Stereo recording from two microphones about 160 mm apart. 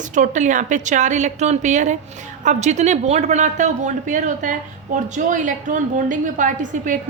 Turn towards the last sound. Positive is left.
turn(degrees=-55)  # may be behind; listen again after turning